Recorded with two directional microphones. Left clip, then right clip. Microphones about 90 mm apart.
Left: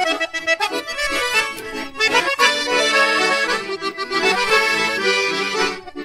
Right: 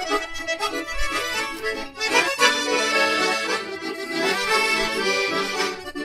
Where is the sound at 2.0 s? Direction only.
40° left (ahead or behind).